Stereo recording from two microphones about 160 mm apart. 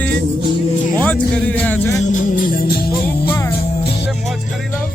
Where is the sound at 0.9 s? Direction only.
10° left (ahead or behind).